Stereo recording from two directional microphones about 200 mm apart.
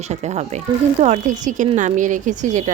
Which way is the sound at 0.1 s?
35° right (ahead or behind).